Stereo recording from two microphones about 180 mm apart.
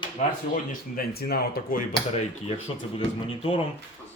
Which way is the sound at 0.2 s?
50° left (ahead or behind).